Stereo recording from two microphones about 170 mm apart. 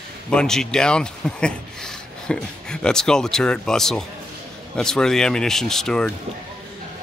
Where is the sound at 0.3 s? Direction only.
5° left (ahead or behind).